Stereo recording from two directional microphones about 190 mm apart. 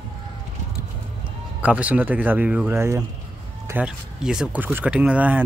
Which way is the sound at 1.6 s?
5° right (ahead or behind).